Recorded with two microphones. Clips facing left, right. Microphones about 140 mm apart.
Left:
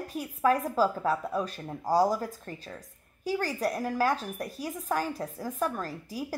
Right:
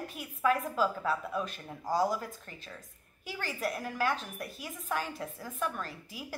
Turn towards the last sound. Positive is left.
turn(degrees=40)  # may be behind; listen again after turning